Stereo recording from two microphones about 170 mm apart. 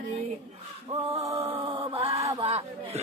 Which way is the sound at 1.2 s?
35° right (ahead or behind).